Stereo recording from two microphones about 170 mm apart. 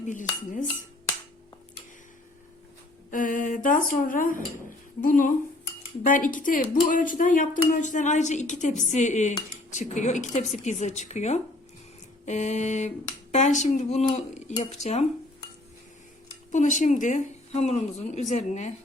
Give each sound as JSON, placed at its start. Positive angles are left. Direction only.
{"t": 0.0, "sound": "dishes", "side_deg": 50}
{"t": 3.1, "sound": "speech", "side_deg": 50}
{"t": 16.5, "sound": "speech", "side_deg": 45}